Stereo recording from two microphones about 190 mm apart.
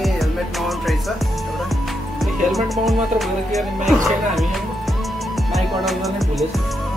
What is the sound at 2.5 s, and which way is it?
Music, centre (ahead or behind).